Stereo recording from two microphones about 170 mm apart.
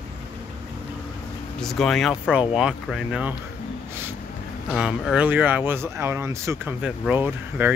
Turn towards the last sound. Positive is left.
turn(degrees=-10)  # may be behind; listen again after turning